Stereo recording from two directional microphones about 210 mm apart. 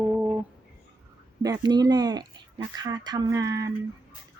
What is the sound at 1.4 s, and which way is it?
Speech, 20° right (ahead or behind).